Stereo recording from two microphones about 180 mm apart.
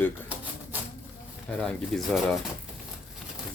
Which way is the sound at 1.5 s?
5° left (ahead or behind).